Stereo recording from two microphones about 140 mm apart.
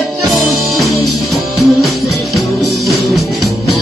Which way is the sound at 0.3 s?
Centre (ahead or behind).